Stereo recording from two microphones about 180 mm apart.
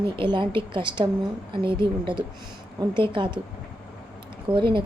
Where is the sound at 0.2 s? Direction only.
25° right (ahead or behind).